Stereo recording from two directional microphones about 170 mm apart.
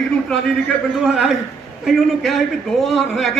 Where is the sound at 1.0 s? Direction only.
5° right (ahead or behind).